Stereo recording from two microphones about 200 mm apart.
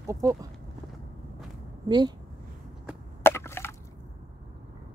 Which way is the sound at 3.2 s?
10° left (ahead or behind).